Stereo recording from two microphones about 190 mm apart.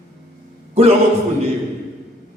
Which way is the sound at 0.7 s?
35° right (ahead or behind).